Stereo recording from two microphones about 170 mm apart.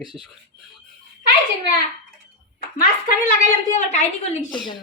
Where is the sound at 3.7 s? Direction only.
45° left (ahead or behind).